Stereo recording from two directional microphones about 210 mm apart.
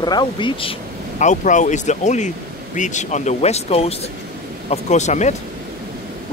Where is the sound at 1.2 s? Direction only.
35° left (ahead or behind).